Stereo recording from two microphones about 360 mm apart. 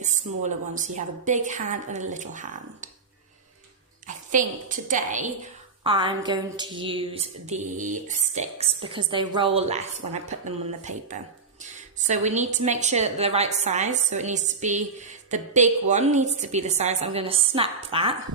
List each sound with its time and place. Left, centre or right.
0.0 s a woman's voice: centre
4.0 s a woman's voice: right